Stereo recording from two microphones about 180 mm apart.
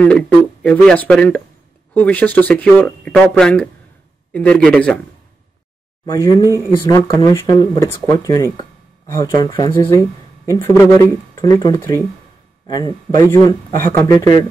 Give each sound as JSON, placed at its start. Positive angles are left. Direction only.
{"t": 0.0, "sound": "speech", "side_deg": 5}
{"t": 6.0, "sound": "speech", "side_deg": 20}
{"t": 13.1, "sound": "speech", "side_deg": 20}